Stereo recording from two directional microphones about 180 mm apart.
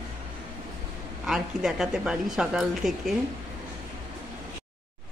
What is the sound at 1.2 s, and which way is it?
A woman's voice, centre (ahead or behind).